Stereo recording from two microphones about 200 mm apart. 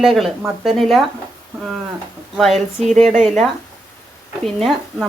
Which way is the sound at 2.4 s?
Centre (ahead or behind).